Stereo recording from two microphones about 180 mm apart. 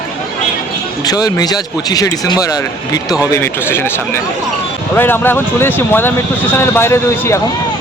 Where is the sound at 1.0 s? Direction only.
20° left (ahead or behind).